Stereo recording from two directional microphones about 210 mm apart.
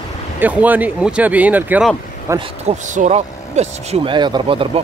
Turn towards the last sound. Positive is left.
turn(degrees=-25)  # may be behind; listen again after turning